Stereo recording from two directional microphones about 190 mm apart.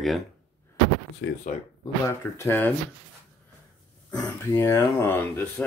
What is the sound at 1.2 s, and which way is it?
Speech, 70° left (ahead or behind).